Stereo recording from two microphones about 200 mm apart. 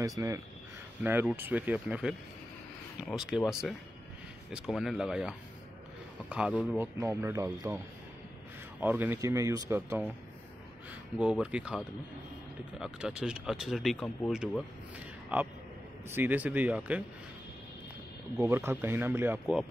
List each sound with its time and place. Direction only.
0.2 s speech: 15° right (ahead or behind)
8.8 s speech: 10° right (ahead or behind)
11.1 s speech: 5° right (ahead or behind)
18.4 s speech: 10° right (ahead or behind)